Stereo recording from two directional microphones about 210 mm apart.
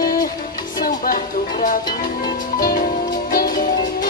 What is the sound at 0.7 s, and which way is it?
Music, 45° left (ahead or behind).